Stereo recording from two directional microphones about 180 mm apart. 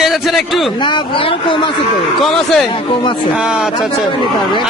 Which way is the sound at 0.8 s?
30° left (ahead or behind).